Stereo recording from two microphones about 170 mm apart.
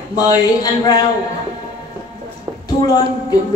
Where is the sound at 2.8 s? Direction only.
20° left (ahead or behind).